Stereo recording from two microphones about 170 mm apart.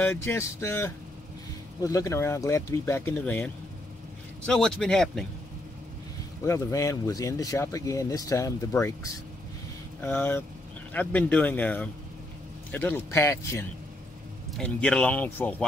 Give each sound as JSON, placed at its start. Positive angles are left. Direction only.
{"t": 0.0, "sound": "speech", "side_deg": 15}
{"t": 6.4, "sound": "speech", "side_deg": 15}
{"t": 14.6, "sound": "speech", "side_deg": 5}